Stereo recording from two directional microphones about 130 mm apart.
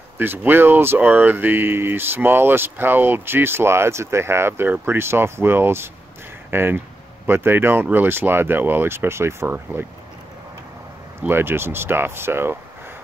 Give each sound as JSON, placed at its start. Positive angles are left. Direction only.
{"t": 0.2, "sound": "speech", "side_deg": -15}
{"t": 11.2, "sound": "speech", "side_deg": -15}